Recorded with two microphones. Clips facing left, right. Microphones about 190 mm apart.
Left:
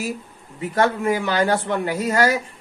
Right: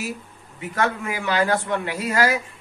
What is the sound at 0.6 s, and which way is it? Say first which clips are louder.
Speech: left 4 dB; 35° left (ahead or behind).